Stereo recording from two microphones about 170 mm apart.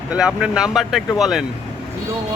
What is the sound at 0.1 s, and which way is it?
Speech, 5° right (ahead or behind).